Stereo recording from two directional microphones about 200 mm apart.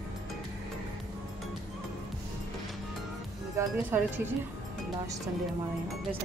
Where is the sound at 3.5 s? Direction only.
10° right (ahead or behind).